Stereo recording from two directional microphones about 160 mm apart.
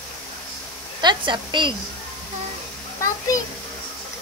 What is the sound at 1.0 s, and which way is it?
Speech, 30° right (ahead or behind).